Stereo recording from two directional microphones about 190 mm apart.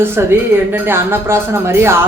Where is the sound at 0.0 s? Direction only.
10° right (ahead or behind).